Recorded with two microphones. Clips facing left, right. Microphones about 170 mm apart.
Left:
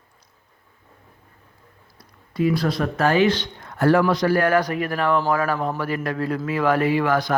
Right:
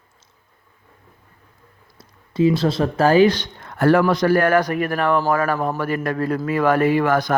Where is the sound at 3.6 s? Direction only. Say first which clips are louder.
Right 2 dB; 60° right (ahead or behind).